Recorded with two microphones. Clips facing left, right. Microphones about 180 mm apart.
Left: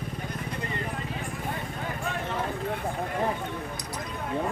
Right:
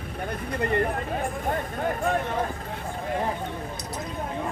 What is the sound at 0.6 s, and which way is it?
Vehicle, 60° right (ahead or behind).